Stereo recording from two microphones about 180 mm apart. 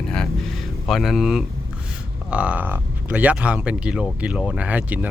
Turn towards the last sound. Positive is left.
turn(degrees=-10)  # may be behind; listen again after turning